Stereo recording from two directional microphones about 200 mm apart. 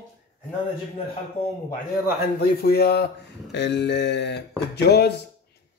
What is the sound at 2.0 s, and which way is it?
Speech, 50° left (ahead or behind).